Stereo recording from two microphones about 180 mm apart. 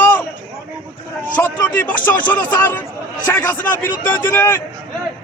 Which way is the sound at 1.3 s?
10° left (ahead or behind).